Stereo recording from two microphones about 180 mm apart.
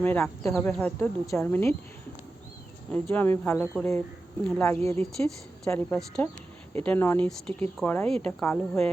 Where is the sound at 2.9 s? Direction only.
10° left (ahead or behind).